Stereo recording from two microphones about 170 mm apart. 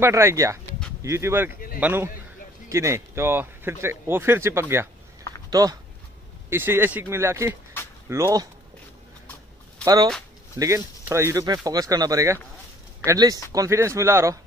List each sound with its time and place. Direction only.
0.0 s speech: 15° right (ahead or behind)
7.8 s a sound: 15° left (ahead or behind)
8.1 s speech: 20° right (ahead or behind)
10.6 s speech: 15° right (ahead or behind)